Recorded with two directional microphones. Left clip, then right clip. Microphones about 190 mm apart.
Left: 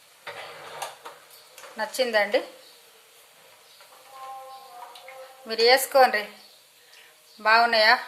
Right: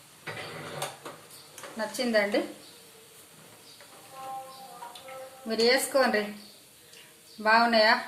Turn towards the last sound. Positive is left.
turn(degrees=40)  # may be behind; listen again after turning